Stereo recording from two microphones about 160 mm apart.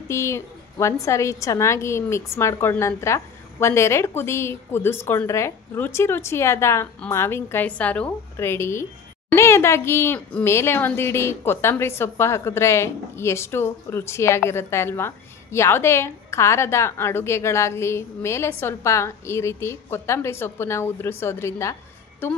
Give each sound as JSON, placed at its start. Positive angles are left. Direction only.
{"t": 0.1, "sound": "a woman's voice", "side_deg": 15}